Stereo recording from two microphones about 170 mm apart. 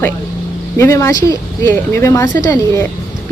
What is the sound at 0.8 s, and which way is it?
Speech, 15° left (ahead or behind).